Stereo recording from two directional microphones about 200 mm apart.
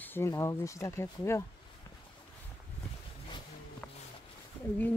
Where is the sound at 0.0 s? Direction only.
10° left (ahead or behind).